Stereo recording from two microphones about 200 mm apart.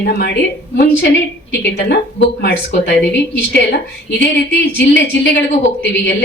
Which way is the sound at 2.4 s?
55° left (ahead or behind).